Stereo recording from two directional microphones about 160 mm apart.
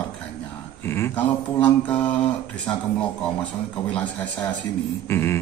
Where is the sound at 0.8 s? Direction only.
15° left (ahead or behind).